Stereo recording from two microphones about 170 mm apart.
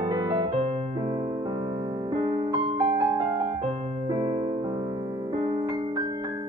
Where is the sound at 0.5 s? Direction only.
35° right (ahead or behind).